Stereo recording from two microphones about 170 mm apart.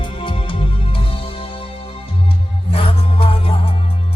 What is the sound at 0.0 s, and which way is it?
Music, 30° left (ahead or behind).